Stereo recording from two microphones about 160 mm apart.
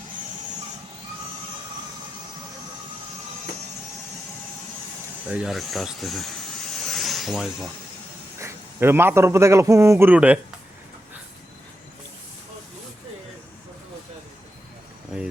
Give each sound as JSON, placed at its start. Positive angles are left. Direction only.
{"t": 5.3, "sound": "speech", "side_deg": -5}
{"t": 6.8, "sound": "a sound", "side_deg": 0}
{"t": 8.4, "sound": "a man's voice", "side_deg": -15}